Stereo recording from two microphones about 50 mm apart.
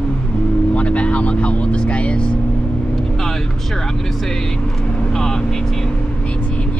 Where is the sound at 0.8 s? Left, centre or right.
Left.